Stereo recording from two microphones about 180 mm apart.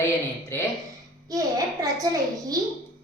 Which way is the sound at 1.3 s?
20° right (ahead or behind).